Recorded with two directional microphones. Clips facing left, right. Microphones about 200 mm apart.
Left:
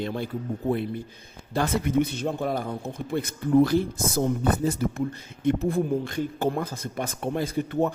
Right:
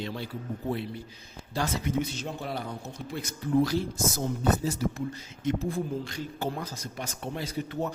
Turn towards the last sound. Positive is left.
turn(degrees=55)  # may be behind; listen again after turning